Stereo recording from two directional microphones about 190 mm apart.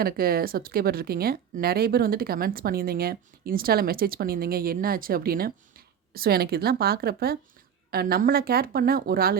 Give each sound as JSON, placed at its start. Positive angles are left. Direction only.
{"t": 0.0, "sound": "speech", "side_deg": -50}